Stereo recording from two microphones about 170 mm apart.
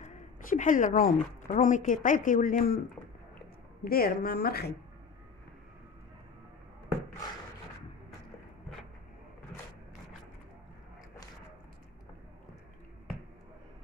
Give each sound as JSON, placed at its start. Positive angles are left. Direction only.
{"t": 0.0, "sound": "a woman's voice", "side_deg": 45}
{"t": 3.8, "sound": "a woman's voice", "side_deg": 65}